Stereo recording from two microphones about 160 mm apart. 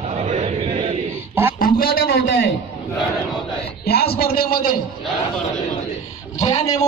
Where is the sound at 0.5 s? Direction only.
30° right (ahead or behind).